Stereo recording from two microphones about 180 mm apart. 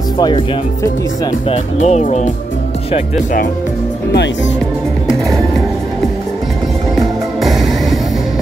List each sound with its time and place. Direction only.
1.5 s speech: 40° left (ahead or behind)
7.0 s music: centre (ahead or behind)